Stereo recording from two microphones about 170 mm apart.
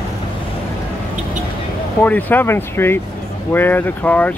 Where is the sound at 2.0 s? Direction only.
10° left (ahead or behind).